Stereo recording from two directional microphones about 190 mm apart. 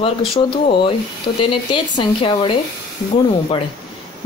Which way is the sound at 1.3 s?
25° left (ahead or behind).